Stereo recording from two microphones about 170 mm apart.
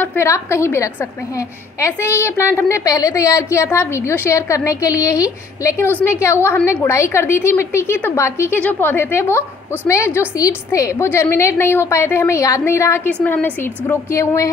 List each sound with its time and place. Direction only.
0.0 s a woman's voice: 15° left (ahead or behind)